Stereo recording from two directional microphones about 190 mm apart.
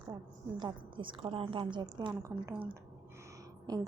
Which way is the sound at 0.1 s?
25° right (ahead or behind).